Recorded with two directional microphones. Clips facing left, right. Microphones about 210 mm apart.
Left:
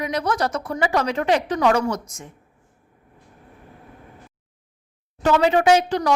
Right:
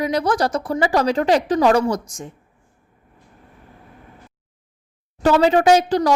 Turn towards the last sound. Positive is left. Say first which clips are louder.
# right 2 dB
turn(degrees=-35)  # may be behind; listen again after turning